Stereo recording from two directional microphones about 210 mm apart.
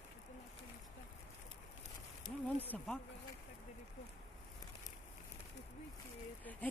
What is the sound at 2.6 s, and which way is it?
Speech, 10° left (ahead or behind).